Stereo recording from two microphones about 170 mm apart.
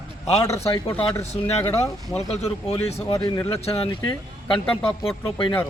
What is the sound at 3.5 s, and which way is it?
Speech, 35° left (ahead or behind).